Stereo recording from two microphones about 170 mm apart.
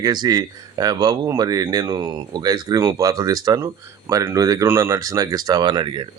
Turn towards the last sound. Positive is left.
turn(degrees=-30)  # may be behind; listen again after turning